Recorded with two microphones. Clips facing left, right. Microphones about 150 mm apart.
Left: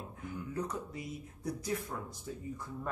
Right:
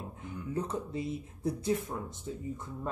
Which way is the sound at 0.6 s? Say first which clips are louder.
Right 6 dB; 25° right (ahead or behind).